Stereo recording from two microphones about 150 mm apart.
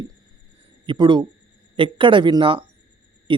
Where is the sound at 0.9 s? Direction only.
30° right (ahead or behind).